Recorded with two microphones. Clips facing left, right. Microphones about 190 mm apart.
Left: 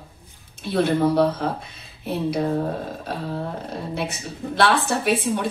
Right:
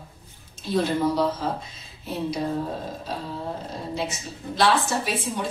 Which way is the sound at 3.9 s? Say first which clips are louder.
Right 1 dB; 60° left (ahead or behind).